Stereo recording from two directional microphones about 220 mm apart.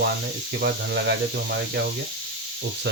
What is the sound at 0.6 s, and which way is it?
Speech, 45° right (ahead or behind).